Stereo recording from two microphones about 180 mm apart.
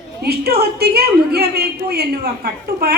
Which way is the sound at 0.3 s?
65° right (ahead or behind).